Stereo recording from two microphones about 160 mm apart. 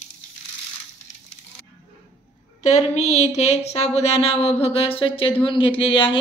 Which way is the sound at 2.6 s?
45° left (ahead or behind).